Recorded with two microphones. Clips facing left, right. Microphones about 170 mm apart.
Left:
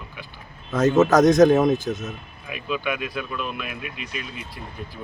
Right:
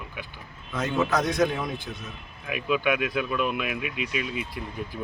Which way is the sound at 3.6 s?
75° right (ahead or behind).